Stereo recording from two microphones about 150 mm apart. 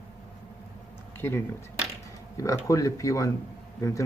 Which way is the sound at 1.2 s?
15° left (ahead or behind).